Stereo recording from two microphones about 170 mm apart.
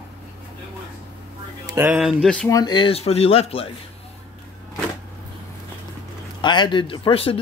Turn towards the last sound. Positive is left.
turn(degrees=35)  # may be behind; listen again after turning